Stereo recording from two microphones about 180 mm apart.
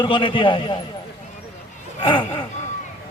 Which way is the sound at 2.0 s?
30° left (ahead or behind).